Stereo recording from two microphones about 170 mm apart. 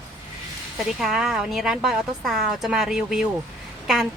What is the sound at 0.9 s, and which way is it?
A woman's voice, centre (ahead or behind).